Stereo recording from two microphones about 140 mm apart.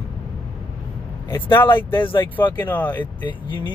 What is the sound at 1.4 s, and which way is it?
Speech, 35° left (ahead or behind).